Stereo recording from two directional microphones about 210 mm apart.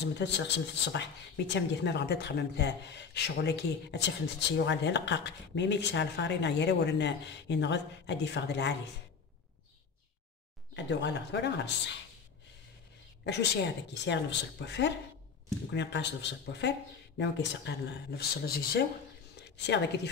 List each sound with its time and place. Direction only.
0.0 s speech: 55° left (ahead or behind)
10.8 s speech: 55° left (ahead or behind)
13.2 s a woman's voice: 55° left (ahead or behind)